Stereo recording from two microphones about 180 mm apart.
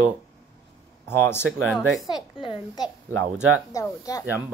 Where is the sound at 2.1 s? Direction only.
25° left (ahead or behind).